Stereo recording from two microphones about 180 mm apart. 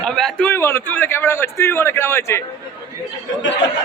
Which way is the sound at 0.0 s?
5° left (ahead or behind).